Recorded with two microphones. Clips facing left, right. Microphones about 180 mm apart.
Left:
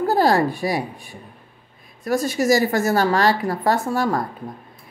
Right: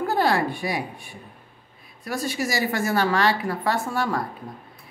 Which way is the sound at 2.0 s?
45° left (ahead or behind).